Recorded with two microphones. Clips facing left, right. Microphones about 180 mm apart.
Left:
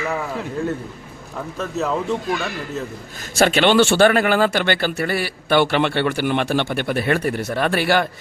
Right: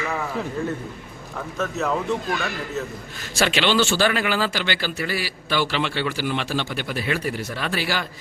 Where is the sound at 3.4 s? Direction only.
50° left (ahead or behind).